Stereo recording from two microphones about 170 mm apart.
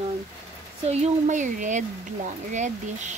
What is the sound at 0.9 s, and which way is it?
Speech, 40° right (ahead or behind).